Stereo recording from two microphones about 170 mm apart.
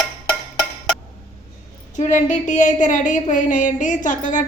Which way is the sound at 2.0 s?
45° left (ahead or behind).